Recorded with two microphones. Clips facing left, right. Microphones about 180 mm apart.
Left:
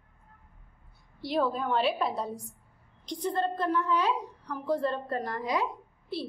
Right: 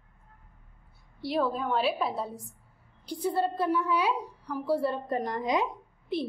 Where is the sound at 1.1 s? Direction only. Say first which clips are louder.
Even; centre (ahead or behind); by 5.6 s 20° right (ahead or behind).